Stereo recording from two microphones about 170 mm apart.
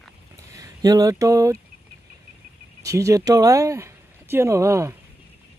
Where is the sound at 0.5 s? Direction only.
20° right (ahead or behind).